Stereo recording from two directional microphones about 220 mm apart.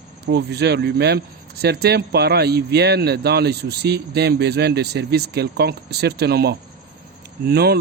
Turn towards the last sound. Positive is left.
turn(degrees=-45)  # may be behind; listen again after turning